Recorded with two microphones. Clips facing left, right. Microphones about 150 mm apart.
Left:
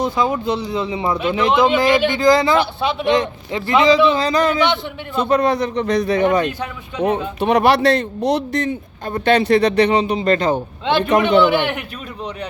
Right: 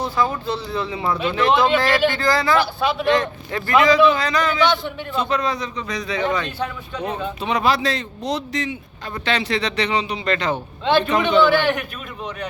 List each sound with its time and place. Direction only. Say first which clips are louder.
0.0 s speech: left 3 dB; 20° left (ahead or behind); by 4.5 s 35° left (ahead or behind)
5.1 s speech: left 6 dB; 45° left (ahead or behind)
7.3 s speech: left 5 dB; 60° left (ahead or behind); by 10.5 s 40° left (ahead or behind)
10.5 s a man's voice: left 1 dB; 15° left (ahead or behind)